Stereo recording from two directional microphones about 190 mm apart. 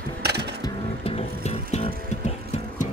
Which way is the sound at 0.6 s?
30° left (ahead or behind).